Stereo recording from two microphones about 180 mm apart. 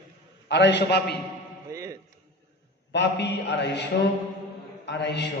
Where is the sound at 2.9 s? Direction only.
75° left (ahead or behind).